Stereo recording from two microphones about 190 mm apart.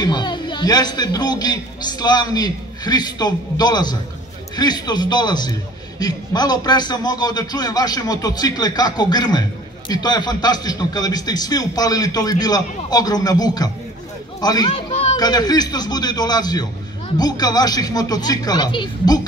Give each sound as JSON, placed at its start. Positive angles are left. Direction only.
{"t": 0.0, "sound": "a man's voice", "side_deg": 25}
{"t": 14.7, "sound": "a child's voice", "side_deg": 35}
{"t": 15.1, "sound": "a man's voice", "side_deg": 20}